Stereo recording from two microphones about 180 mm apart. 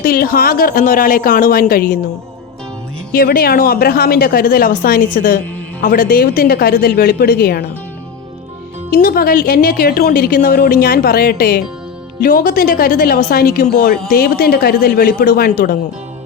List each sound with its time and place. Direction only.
0.0 s a woman's voice: 55° left (ahead or behind)
3.1 s speech: 55° left (ahead or behind)
8.9 s a woman's voice: 55° left (ahead or behind)